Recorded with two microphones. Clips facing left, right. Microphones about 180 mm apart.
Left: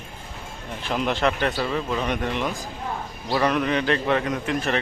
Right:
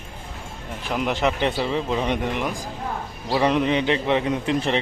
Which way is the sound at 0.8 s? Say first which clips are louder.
Even; 15° right (ahead or behind).